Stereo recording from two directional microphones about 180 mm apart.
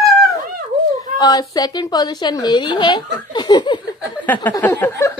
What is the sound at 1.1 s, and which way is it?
A woman's voice, 20° left (ahead or behind).